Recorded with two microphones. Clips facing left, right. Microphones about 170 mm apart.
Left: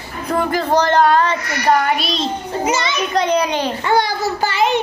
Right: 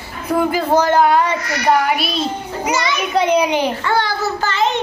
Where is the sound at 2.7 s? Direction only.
25° left (ahead or behind).